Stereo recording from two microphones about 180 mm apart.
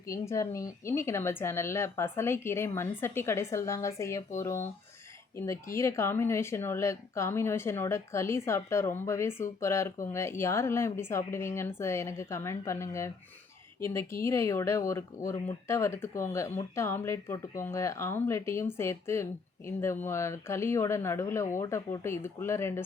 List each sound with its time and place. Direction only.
0.1 s speech: 15° left (ahead or behind)
5.5 s speech: 15° left (ahead or behind)